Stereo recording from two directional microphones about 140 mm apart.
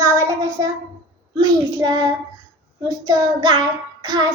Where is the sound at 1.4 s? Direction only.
25° right (ahead or behind).